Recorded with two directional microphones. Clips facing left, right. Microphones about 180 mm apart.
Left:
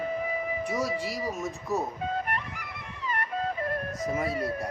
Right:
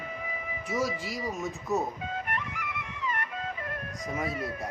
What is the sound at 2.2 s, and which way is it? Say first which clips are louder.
Music: left 1 dB; 35° left (ahead or behind).